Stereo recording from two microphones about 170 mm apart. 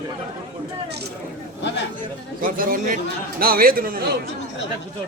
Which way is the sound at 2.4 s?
55° right (ahead or behind).